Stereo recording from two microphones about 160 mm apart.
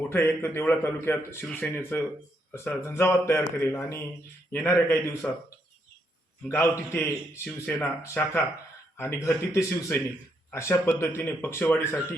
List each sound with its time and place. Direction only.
0.1 s a man's voice: 15° left (ahead or behind)
6.5 s a man's voice: 15° left (ahead or behind)